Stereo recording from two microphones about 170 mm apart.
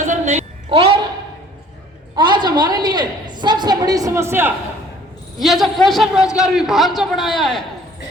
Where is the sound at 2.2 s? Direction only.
25° right (ahead or behind).